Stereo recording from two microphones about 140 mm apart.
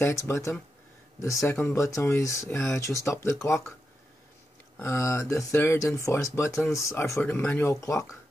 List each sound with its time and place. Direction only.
0.0 s speech: 20° left (ahead or behind)
4.8 s speech: 20° left (ahead or behind)